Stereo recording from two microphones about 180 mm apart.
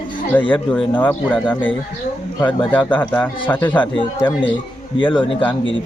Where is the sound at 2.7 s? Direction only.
10° left (ahead or behind).